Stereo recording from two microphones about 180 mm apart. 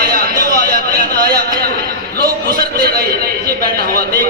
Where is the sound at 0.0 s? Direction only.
55° right (ahead or behind).